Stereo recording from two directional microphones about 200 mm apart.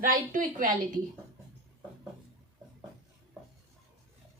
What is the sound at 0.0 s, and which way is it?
Speech, 45° right (ahead or behind).